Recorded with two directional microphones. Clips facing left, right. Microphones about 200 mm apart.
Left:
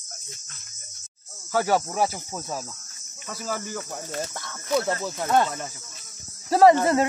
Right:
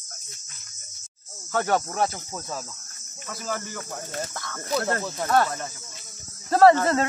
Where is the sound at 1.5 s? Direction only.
5° left (ahead or behind).